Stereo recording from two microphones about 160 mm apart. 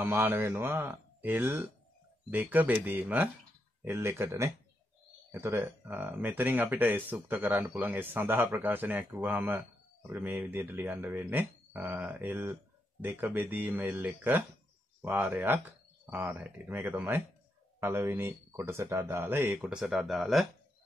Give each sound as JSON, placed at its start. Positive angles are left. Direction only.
{"t": 0.0, "sound": "speech", "side_deg": -15}